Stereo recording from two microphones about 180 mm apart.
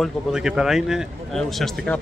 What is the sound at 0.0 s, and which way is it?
A man's voice, 5° right (ahead or behind).